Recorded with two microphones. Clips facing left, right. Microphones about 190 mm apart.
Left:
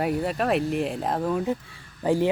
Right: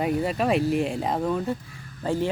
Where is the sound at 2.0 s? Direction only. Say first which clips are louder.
Left 3 dB; 15° left (ahead or behind).